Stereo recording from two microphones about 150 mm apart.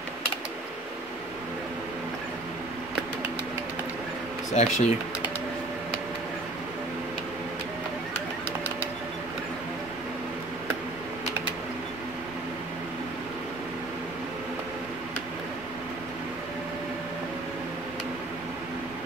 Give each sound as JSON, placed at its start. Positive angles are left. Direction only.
{"t": 4.6, "sound": "speech", "side_deg": 50}